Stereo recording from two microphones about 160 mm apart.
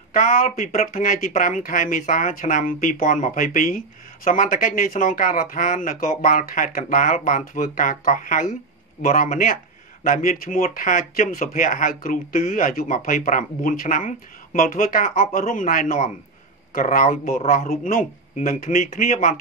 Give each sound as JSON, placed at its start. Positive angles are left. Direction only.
{"t": 0.1, "sound": "speech", "side_deg": 60}